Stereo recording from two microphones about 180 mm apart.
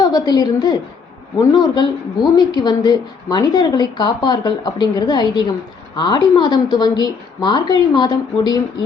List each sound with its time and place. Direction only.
0.0 s a woman's voice: 20° left (ahead or behind)